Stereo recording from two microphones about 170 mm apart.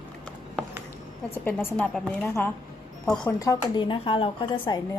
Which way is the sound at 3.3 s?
20° left (ahead or behind).